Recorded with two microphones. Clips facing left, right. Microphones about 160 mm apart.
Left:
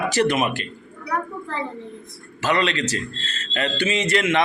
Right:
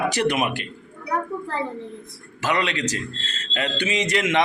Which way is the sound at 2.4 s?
10° right (ahead or behind).